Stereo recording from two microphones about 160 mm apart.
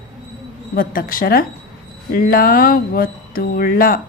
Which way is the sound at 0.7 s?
65° left (ahead or behind).